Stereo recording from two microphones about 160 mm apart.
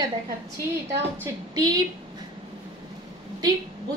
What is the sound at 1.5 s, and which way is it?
Speech, 20° right (ahead or behind).